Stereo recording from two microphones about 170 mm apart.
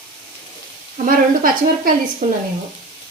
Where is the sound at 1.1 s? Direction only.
55° right (ahead or behind).